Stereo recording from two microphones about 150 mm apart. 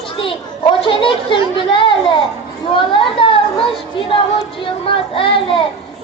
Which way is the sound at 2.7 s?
35° left (ahead or behind).